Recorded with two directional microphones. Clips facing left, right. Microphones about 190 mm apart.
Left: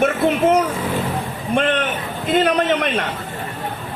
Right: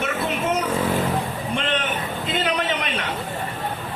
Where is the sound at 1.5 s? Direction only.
55° left (ahead or behind).